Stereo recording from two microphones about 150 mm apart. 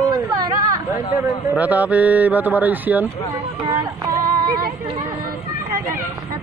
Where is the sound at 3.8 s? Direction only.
30° right (ahead or behind).